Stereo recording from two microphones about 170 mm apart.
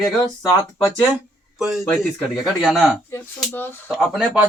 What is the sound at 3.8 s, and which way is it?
Speech, centre (ahead or behind).